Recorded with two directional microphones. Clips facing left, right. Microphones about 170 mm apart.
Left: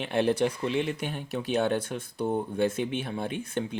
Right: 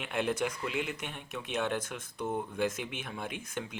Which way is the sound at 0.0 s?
35° left (ahead or behind).